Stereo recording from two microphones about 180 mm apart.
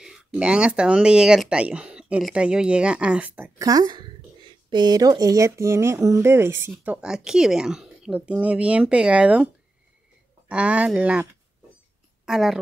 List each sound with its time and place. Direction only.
0.0 s speech: 5° right (ahead or behind)
10.5 s speech: 5° right (ahead or behind)
12.3 s speech: centre (ahead or behind)